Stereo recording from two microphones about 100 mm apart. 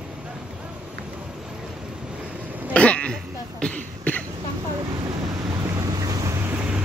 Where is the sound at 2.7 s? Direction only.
10° left (ahead or behind).